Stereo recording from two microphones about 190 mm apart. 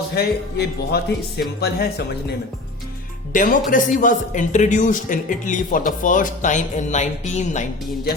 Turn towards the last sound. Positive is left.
turn(degrees=40)  # may be behind; listen again after turning